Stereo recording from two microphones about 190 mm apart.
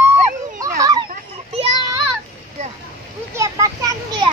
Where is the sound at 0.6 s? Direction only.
15° right (ahead or behind).